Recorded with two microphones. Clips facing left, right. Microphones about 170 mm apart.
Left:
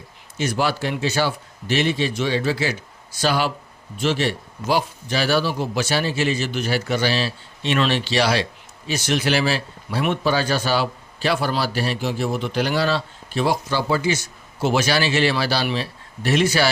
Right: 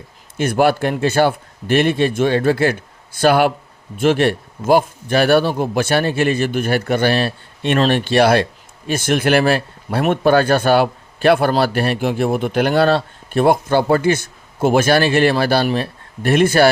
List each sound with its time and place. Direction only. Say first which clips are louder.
0.3 s speech: right 7 dB; 55° right (ahead or behind)